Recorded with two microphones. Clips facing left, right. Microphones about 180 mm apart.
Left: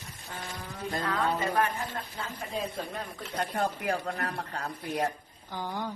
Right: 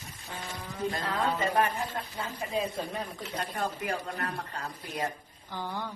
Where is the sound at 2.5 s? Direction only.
10° right (ahead or behind).